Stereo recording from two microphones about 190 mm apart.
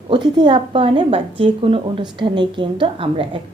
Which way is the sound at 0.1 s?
25° right (ahead or behind).